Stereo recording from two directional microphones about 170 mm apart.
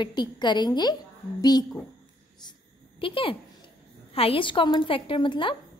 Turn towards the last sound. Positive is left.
turn(degrees=30)  # may be behind; listen again after turning